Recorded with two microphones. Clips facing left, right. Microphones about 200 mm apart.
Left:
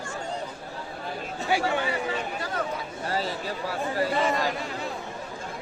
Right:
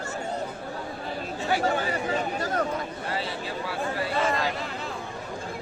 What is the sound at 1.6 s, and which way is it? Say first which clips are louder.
Speech: right 1 dB; 40° right (ahead or behind).